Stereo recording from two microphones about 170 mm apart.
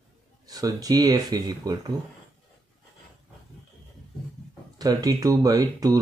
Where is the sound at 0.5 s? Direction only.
20° right (ahead or behind).